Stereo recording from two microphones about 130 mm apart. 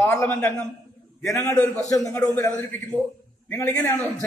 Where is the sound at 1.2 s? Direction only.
25° left (ahead or behind).